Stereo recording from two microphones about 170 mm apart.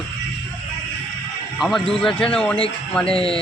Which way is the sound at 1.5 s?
Centre (ahead or behind).